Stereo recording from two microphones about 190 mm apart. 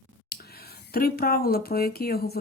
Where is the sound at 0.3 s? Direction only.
55° left (ahead or behind).